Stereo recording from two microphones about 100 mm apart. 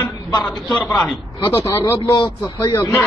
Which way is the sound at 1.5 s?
30° left (ahead or behind).